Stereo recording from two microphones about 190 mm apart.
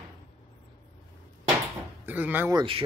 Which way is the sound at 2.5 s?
25° right (ahead or behind).